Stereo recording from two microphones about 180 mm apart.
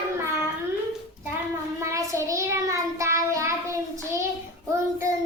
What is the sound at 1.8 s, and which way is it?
Child singing, 15° right (ahead or behind).